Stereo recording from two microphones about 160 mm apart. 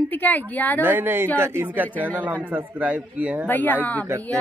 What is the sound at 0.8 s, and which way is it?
Speech, 10° right (ahead or behind).